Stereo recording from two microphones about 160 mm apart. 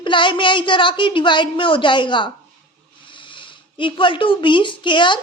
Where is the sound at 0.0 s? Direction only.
30° left (ahead or behind).